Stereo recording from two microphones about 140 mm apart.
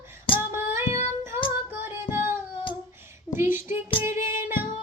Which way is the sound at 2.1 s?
15° right (ahead or behind).